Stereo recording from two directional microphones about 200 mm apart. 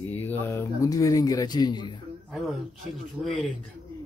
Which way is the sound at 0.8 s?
15° left (ahead or behind).